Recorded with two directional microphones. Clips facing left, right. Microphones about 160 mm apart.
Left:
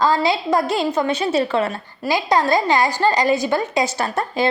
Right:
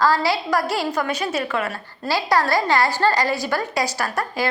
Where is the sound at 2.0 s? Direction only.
20° left (ahead or behind).